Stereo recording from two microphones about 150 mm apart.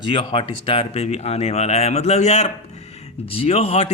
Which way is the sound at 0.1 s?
35° left (ahead or behind).